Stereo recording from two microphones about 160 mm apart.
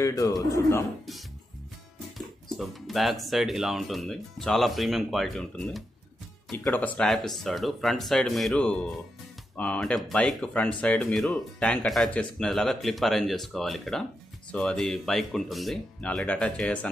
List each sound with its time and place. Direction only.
0.0 s speech: 20° left (ahead or behind)
2.1 s speech: centre (ahead or behind)